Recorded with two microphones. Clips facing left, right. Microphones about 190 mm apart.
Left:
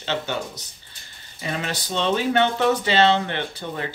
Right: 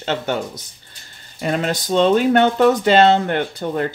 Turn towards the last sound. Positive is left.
turn(degrees=-50)  # may be behind; listen again after turning